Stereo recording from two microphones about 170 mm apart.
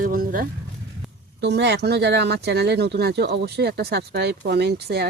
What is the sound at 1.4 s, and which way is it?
Speech, 90° right.